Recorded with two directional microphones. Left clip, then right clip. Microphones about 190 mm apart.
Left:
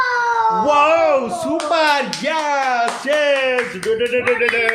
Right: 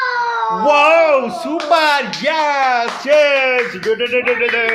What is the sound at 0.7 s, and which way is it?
Speech, centre (ahead or behind).